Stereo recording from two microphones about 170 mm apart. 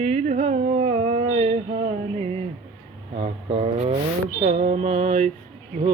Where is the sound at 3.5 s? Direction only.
35° right (ahead or behind).